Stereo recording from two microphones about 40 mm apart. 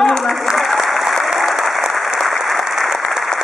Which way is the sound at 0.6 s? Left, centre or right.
Centre.